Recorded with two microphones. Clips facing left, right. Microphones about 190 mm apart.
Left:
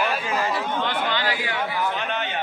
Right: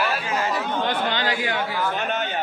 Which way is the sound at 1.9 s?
45° right (ahead or behind).